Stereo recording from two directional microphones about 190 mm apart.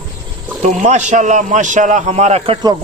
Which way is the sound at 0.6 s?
40° right (ahead or behind).